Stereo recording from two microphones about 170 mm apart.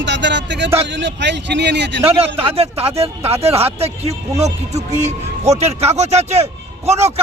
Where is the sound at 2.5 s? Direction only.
35° right (ahead or behind).